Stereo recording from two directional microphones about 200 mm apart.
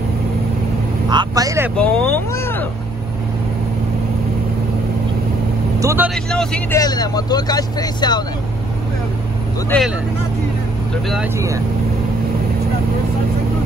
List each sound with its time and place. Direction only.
1.1 s speech: 15° right (ahead or behind)
1.8 s speech: 5° left (ahead or behind)
5.8 s speech: 10° right (ahead or behind)
6.1 s speech: 5° left (ahead or behind)
6.8 s speech: 20° left (ahead or behind)
9.7 s speech: centre (ahead or behind)
11.3 s speech: 15° right (ahead or behind)